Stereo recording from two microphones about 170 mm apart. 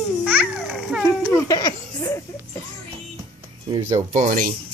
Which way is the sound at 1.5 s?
20° left (ahead or behind).